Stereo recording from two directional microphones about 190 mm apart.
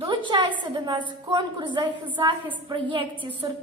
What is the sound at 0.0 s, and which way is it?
A woman's voice, 25° right (ahead or behind).